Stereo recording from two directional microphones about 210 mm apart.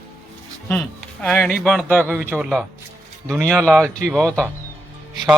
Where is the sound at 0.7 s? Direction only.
5° left (ahead or behind).